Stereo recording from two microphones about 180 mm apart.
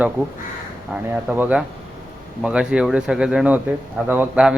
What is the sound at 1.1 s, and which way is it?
A man's voice, 10° right (ahead or behind).